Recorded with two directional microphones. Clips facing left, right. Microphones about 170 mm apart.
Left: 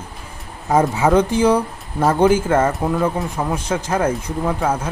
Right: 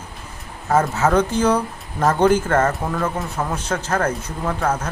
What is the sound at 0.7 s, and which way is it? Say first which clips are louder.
A man's voice: left 2 dB; 15° left (ahead or behind).